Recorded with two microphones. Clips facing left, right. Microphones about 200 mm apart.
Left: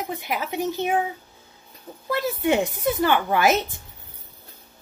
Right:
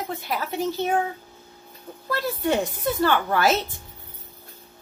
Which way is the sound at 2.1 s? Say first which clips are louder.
Left 2 dB; 20° left (ahead or behind).